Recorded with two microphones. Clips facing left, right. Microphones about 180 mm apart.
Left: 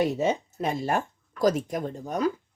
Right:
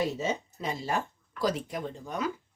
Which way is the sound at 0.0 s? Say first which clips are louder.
Left 5 dB; 60° left (ahead or behind).